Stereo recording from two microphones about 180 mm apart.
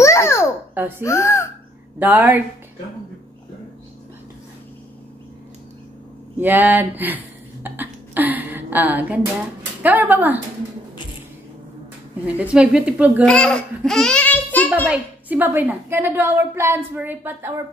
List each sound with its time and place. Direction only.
0.0 s babbling: 15° left (ahead or behind)
0.7 s a woman's voice: 10° right (ahead or behind)
1.0 s speech: 15° left (ahead or behind)
2.0 s a woman's voice: 10° right (ahead or behind)
6.3 s a woman's voice: 10° right (ahead or behind)
7.6 s a sound: 10° right (ahead or behind)
9.8 s a woman's voice: 10° right (ahead or behind)
12.4 s a woman's voice: 5° right (ahead or behind)
13.2 s a child's voice: 5° left (ahead or behind)
14.9 s a woman's voice: 10° right (ahead or behind)